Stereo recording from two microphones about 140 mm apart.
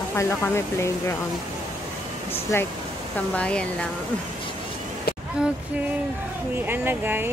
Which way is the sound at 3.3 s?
10° left (ahead or behind).